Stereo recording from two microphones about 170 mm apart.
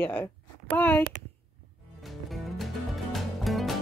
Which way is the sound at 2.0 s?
Centre (ahead or behind).